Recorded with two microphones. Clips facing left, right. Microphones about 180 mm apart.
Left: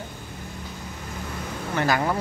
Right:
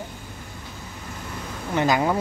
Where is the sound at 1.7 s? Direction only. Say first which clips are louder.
Right 3 dB; 20° right (ahead or behind).